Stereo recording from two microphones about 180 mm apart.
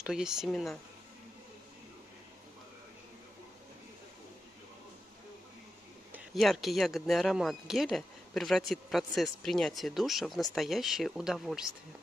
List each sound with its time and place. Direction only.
0.0 s speech: 5° right (ahead or behind)
6.1 s speech: centre (ahead or behind)